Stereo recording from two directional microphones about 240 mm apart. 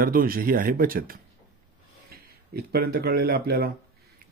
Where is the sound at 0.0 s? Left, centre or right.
Right.